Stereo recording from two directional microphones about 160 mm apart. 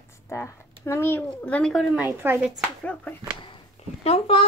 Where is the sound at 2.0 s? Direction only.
15° right (ahead or behind).